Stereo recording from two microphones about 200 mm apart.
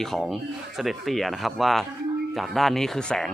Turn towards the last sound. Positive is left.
turn(degrees=0)  # may be behind; listen again after turning